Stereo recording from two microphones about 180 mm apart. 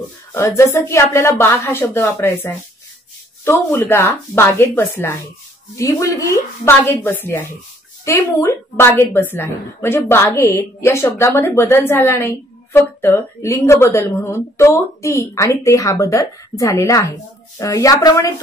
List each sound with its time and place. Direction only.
0.3 s a woman's voice: 15° left (ahead or behind)